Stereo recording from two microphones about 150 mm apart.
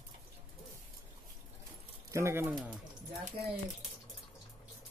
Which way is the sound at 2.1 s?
20° right (ahead or behind).